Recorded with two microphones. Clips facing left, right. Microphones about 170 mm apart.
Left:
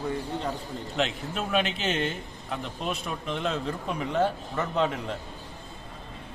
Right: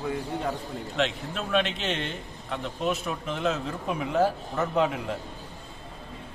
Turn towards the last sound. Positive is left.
turn(degrees=-5)  # may be behind; listen again after turning